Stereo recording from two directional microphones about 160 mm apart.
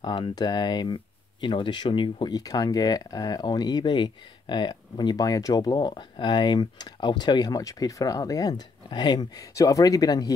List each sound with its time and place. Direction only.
0.0 s speech: 30° left (ahead or behind)